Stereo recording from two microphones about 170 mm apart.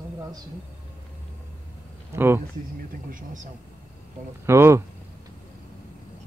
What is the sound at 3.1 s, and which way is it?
Speech, 50° right (ahead or behind).